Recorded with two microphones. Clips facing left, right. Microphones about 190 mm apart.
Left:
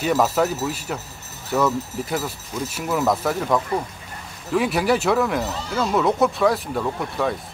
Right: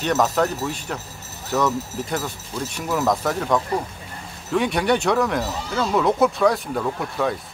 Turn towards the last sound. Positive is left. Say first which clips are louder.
# even
turn(degrees=0)  # may be behind; listen again after turning